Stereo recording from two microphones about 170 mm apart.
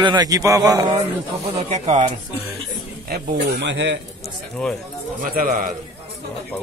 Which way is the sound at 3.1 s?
80° right.